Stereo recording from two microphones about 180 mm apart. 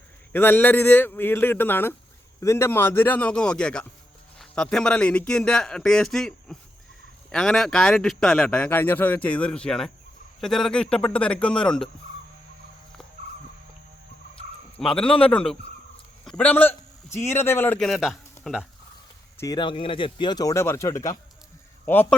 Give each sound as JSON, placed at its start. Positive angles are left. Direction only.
{"t": 0.3, "sound": "speech", "side_deg": 10}
{"t": 14.8, "sound": "speech", "side_deg": 5}
{"t": 19.4, "sound": "speech", "side_deg": 20}